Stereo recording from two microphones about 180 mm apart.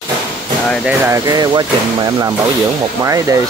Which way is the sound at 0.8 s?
15° right (ahead or behind).